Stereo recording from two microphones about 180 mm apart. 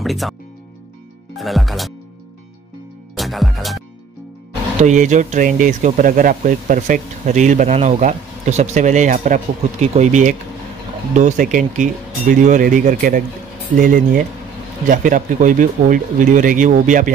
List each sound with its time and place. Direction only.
0.0 s speech: centre (ahead or behind)
3.2 s speech: centre (ahead or behind)
4.7 s speech: 40° right (ahead or behind)